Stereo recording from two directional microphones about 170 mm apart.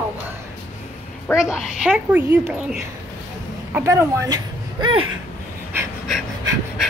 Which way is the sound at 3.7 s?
15° right (ahead or behind).